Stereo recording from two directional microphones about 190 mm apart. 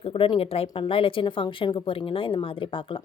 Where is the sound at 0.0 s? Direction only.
30° left (ahead or behind).